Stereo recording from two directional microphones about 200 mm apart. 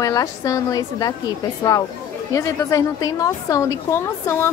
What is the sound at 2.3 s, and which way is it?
A woman's voice, 15° left (ahead or behind).